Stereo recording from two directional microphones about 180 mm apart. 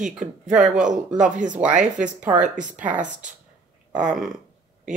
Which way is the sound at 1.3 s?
45° right (ahead or behind).